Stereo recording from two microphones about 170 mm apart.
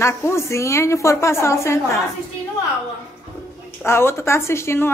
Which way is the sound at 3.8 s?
15° left (ahead or behind).